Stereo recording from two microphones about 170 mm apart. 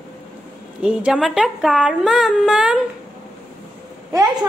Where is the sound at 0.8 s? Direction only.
5° right (ahead or behind).